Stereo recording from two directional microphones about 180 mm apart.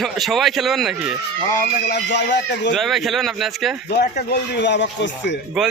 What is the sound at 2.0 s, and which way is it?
Speech, 75° left (ahead or behind).